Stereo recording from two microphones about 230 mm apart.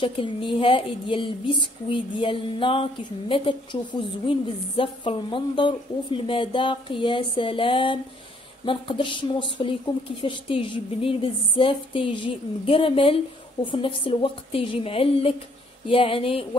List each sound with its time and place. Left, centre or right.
0.0 s a woman's voice: left